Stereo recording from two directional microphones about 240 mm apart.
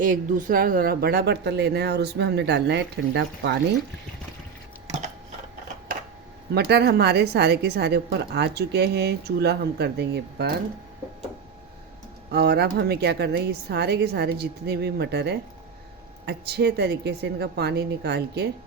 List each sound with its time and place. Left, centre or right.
0.0 s a woman's voice: right
4.9 s a sound: right
6.5 s a woman's voice: right
12.3 s a woman's voice: right